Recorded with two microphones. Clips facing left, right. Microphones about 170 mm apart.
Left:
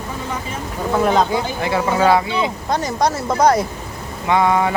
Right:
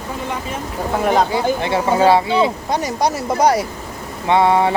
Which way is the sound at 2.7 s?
10° right (ahead or behind).